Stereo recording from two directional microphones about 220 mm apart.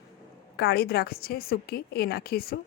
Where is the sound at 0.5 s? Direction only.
45° left (ahead or behind).